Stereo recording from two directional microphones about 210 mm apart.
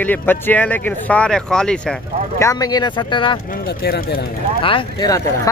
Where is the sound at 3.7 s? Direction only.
45° left (ahead or behind).